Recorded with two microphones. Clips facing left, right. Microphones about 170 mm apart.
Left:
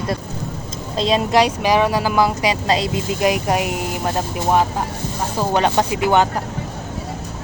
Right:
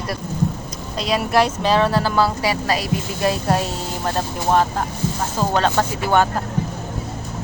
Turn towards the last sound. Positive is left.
turn(degrees=15)  # may be behind; listen again after turning